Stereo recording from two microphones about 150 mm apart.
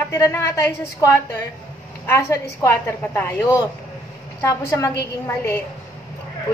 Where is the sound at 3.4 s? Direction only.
30° left (ahead or behind).